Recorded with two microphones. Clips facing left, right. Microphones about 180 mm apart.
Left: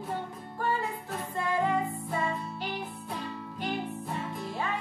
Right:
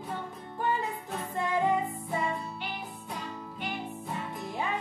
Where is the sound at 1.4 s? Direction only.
15° right (ahead or behind).